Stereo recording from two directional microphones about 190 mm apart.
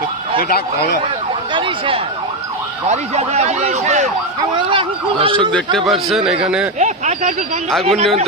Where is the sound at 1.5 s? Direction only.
30° right (ahead or behind).